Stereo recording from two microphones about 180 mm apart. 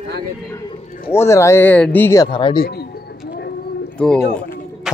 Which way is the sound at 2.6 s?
60° left (ahead or behind).